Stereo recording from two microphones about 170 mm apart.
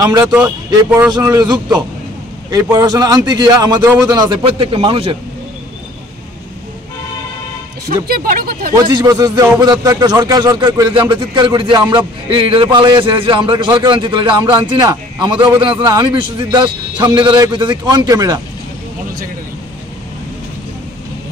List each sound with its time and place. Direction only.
0.0 s a man's voice: 15° right (ahead or behind)
1.1 s a man's voice: 20° right (ahead or behind)
8.1 s speech: 60° right (ahead or behind)
8.8 s a man's voice: 25° right (ahead or behind)